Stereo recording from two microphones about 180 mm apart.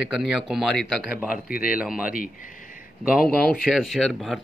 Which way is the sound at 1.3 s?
55° left (ahead or behind).